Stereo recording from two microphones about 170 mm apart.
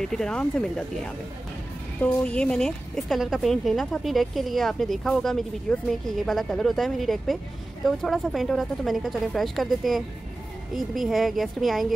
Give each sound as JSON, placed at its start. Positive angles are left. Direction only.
{"t": 0.0, "sound": "a woman's voice", "side_deg": 5}
{"t": 2.0, "sound": "a woman's voice", "side_deg": 10}